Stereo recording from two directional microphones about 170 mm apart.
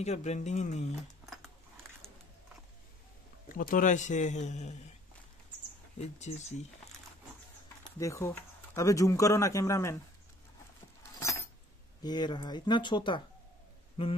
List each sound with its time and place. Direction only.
0.0 s speech: 40° left (ahead or behind)
1.2 s a sound: centre (ahead or behind)
3.4 s speech: 50° left (ahead or behind)
5.9 s speech: 40° left (ahead or behind)
8.0 s speech: 15° left (ahead or behind)
11.1 s keys jangling: 20° left (ahead or behind)
12.0 s speech: 25° left (ahead or behind)